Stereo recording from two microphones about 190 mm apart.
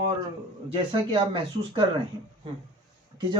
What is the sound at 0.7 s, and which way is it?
Speech, 25° right (ahead or behind).